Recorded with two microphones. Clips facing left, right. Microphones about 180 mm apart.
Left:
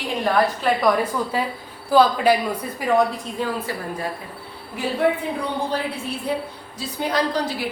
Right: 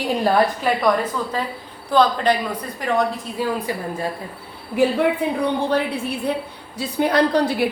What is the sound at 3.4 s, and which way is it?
Speech, 5° right (ahead or behind).